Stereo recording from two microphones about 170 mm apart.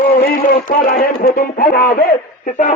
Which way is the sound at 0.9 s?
60° left (ahead or behind).